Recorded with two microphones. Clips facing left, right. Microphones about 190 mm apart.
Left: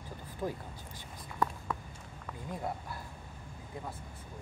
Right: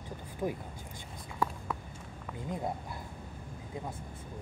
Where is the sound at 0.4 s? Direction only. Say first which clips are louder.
Right 2 dB; 10° right (ahead or behind).